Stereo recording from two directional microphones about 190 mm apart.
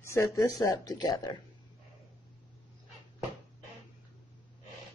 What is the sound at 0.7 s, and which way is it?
Speech, 20° left (ahead or behind).